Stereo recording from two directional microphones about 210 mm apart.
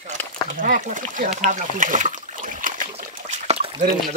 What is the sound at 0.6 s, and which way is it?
Speech, 40° right (ahead or behind).